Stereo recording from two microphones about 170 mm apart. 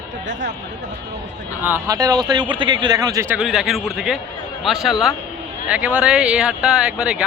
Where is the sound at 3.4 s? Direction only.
Centre (ahead or behind).